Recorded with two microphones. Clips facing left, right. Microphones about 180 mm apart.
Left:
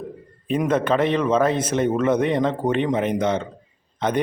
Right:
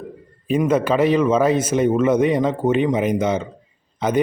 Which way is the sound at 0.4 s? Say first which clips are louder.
Right 3 dB; 5° right (ahead or behind).